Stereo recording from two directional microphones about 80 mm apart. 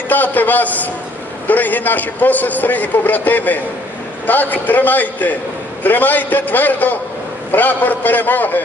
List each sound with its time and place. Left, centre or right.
0.1 s a man's voice: left